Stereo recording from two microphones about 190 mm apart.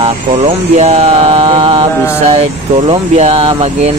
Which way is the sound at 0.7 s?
35° right (ahead or behind).